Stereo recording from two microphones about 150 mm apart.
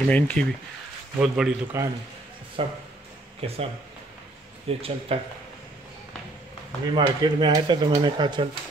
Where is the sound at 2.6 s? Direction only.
40° right (ahead or behind).